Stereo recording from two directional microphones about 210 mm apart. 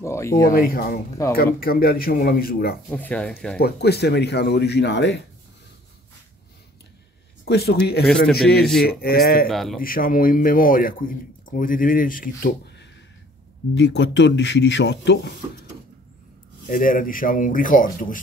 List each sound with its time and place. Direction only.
0.0 s a sound: 15° left (ahead or behind)
0.3 s speech: 45° left (ahead or behind)
2.9 s speech: 5° left (ahead or behind)
3.5 s speech: 50° left (ahead or behind)
7.4 s speech: 50° left (ahead or behind)
9.5 s a man's voice: centre (ahead or behind)
9.8 s a man's voice: 40° left (ahead or behind)
13.7 s speech: 55° left (ahead or behind)
16.7 s a man's voice: 40° left (ahead or behind)